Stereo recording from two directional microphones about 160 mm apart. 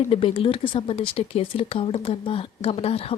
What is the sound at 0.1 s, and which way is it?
Speech, 35° left (ahead or behind).